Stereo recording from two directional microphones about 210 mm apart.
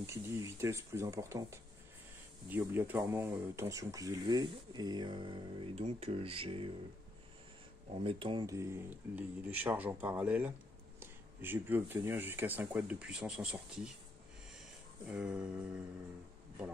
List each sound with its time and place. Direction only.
0.0 s speech: 15° right (ahead or behind)
8.0 s speech: 25° right (ahead or behind); by 13.9 s 5° right (ahead or behind)
15.0 s music: 5° right (ahead or behind)